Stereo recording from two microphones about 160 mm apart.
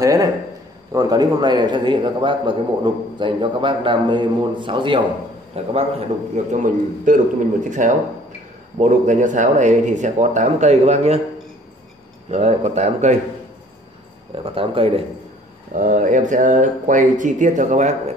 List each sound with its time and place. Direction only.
0.0 s a man's voice: 20° right (ahead or behind); by 11.1 s 45° right (ahead or behind)
12.3 s speech: 45° right (ahead or behind)
14.3 s speech: 35° right (ahead or behind)
15.7 s speech: 55° right (ahead or behind)